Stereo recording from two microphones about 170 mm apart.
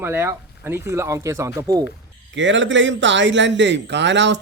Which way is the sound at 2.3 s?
90° right.